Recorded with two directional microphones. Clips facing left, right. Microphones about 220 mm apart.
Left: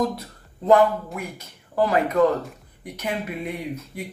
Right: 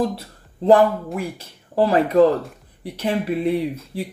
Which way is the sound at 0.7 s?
30° right (ahead or behind).